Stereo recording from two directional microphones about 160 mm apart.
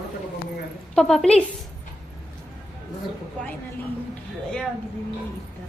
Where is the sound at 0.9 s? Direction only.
5° left (ahead or behind).